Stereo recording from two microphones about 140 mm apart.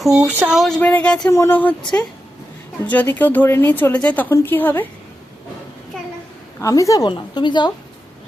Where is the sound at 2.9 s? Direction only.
10° left (ahead or behind).